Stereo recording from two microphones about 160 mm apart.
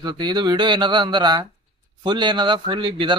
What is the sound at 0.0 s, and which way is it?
A man's voice, 25° right (ahead or behind).